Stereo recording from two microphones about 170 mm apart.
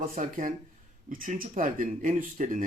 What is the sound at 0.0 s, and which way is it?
Speech, 50° right (ahead or behind).